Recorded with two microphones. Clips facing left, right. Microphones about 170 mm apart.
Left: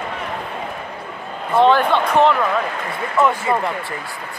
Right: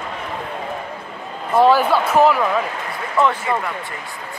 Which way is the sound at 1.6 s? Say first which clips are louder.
Even; 5° right (ahead or behind).